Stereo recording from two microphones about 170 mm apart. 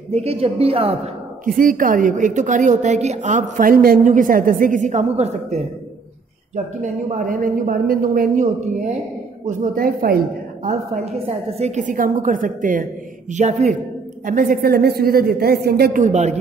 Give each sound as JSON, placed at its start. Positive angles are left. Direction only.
{"t": 0.1, "sound": "a woman's voice", "side_deg": -35}
{"t": 1.4, "sound": "a woman's voice", "side_deg": -55}
{"t": 11.2, "sound": "a woman's voice", "side_deg": -35}
{"t": 16.0, "sound": "a woman's voice", "side_deg": -45}